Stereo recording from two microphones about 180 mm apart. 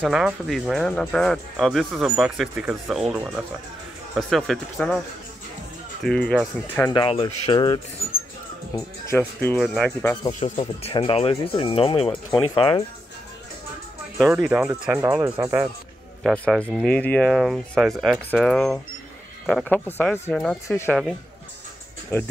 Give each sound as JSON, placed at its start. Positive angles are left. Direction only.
{"t": 0.0, "sound": "speech", "side_deg": -5}
{"t": 6.0, "sound": "speech", "side_deg": 5}
{"t": 6.9, "sound": "speech", "side_deg": 25}
{"t": 10.5, "sound": "speech", "side_deg": 35}
{"t": 14.1, "sound": "speech", "side_deg": -5}
{"t": 16.2, "sound": "speech", "side_deg": 0}
{"t": 22.1, "sound": "speech", "side_deg": 15}